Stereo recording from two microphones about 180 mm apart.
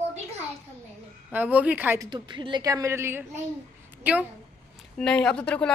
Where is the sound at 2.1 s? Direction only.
25° right (ahead or behind).